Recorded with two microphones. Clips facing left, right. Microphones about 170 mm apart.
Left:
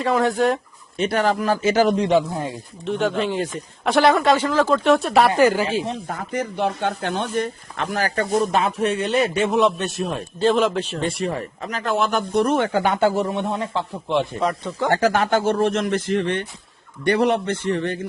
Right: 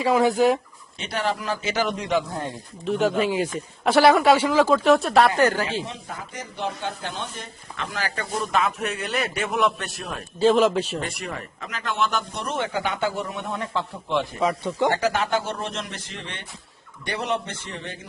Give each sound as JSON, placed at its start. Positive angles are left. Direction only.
{"t": 0.0, "sound": "speech", "side_deg": 0}
{"t": 1.0, "sound": "speech", "side_deg": 50}
{"t": 2.3, "sound": "speech", "side_deg": 0}
{"t": 5.9, "sound": "speech", "side_deg": 55}
{"t": 10.3, "sound": "speech", "side_deg": 0}
{"t": 11.0, "sound": "speech", "side_deg": 30}
{"t": 13.2, "sound": "speech", "side_deg": 25}
{"t": 14.9, "sound": "speech", "side_deg": 50}